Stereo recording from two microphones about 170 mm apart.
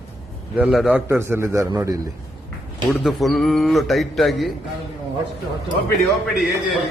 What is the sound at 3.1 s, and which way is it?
Speech, centre (ahead or behind).